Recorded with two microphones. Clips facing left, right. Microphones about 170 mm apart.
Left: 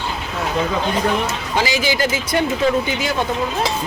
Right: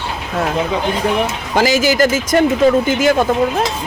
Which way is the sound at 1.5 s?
45° right (ahead or behind).